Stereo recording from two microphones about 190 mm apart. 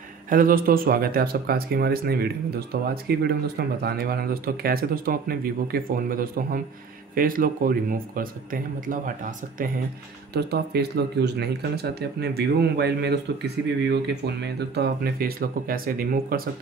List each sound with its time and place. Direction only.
0.3 s speech: 45° right (ahead or behind)
10.3 s speech: 60° right (ahead or behind)